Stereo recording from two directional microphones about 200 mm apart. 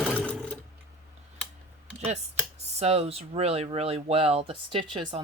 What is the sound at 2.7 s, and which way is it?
Speech, 30° right (ahead or behind).